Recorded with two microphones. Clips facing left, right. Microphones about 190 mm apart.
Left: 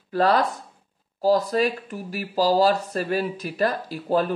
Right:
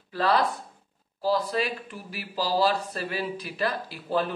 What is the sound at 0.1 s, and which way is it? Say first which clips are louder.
Speech: left 4 dB; 45° left (ahead or behind).